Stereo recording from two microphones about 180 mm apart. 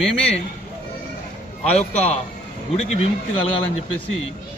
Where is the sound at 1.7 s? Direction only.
35° left (ahead or behind).